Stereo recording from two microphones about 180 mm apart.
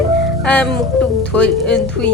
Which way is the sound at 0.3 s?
5° left (ahead or behind).